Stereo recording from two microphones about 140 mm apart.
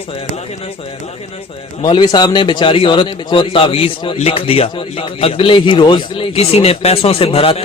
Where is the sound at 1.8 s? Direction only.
35° left (ahead or behind).